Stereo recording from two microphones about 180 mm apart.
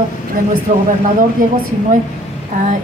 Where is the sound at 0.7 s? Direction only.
35° right (ahead or behind).